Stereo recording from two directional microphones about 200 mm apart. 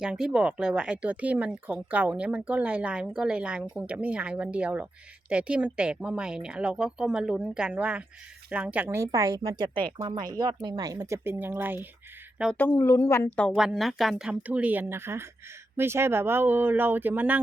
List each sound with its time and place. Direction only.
0.0 s a woman's voice: 5° right (ahead or behind)
12.4 s speech: 5° left (ahead or behind)
13.6 s a woman's voice: centre (ahead or behind)